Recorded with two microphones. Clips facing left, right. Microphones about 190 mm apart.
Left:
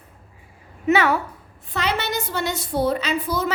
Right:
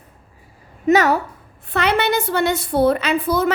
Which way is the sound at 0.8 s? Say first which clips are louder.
Right 4 dB; 40° right (ahead or behind).